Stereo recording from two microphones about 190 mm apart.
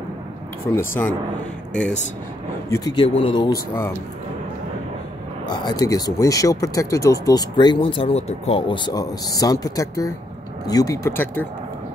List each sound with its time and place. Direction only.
0.7 s speech: 10° left (ahead or behind)
2.7 s speech: 20° left (ahead or behind)
5.5 s speech: 20° left (ahead or behind)